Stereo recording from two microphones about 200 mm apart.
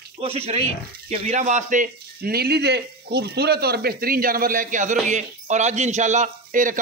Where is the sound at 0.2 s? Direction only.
30° right (ahead or behind).